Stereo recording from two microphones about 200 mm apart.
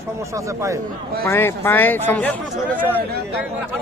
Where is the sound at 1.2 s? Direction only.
15° left (ahead or behind).